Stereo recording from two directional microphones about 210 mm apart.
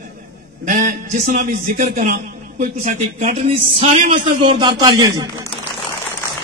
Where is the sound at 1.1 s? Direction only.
40° right (ahead or behind).